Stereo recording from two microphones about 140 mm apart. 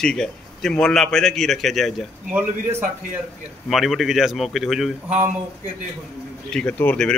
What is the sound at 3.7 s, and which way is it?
A man's voice, centre (ahead or behind).